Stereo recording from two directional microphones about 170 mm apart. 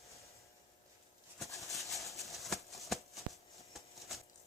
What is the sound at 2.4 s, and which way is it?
Shuffling cards, centre (ahead or behind).